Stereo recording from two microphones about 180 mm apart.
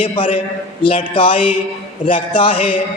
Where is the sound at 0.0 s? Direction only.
30° left (ahead or behind).